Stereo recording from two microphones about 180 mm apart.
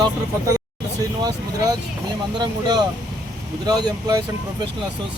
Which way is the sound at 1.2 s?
20° right (ahead or behind).